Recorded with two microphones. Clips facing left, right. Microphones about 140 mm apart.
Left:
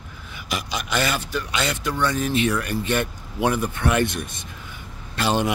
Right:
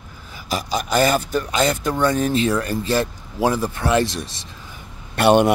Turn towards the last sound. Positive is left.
turn(degrees=-55)  # may be behind; listen again after turning